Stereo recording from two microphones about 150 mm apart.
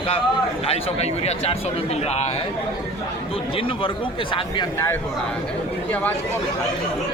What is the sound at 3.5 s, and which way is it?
Speech, 35° left (ahead or behind).